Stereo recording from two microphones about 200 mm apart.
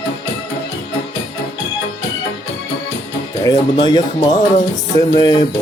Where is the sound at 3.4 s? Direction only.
20° left (ahead or behind).